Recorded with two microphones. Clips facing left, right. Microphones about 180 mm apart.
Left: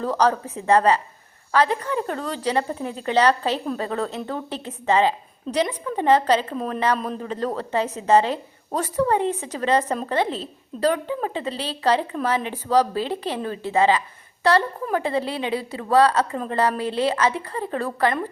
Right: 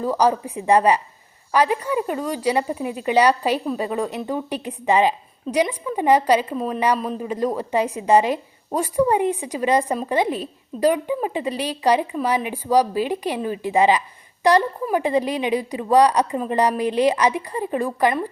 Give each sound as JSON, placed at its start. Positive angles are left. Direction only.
{"t": 0.0, "sound": "a woman's voice", "side_deg": -10}